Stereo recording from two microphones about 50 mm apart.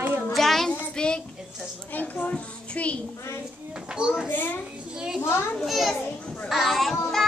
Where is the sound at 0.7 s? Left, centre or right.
Centre.